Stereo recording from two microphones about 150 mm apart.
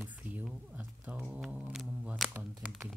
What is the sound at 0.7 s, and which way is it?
Speech, 10° right (ahead or behind).